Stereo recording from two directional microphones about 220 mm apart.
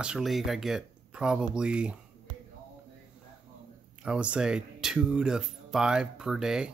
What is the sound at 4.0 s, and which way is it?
Speech, 5° right (ahead or behind).